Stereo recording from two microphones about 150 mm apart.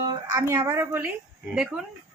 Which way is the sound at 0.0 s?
30° right (ahead or behind).